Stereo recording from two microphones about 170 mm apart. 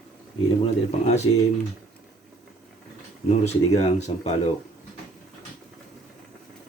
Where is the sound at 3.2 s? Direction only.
40° left (ahead or behind).